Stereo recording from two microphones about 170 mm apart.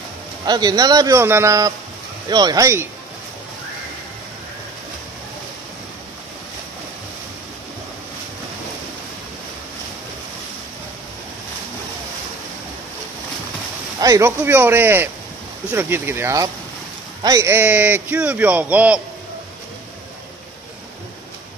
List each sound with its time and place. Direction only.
0.5 s a man's voice: 25° right (ahead or behind)
13.9 s a man's voice: 20° right (ahead or behind)